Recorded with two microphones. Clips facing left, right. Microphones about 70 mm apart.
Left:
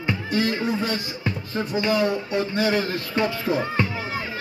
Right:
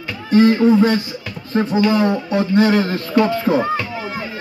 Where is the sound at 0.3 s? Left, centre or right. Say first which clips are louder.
Right 13 dB; right.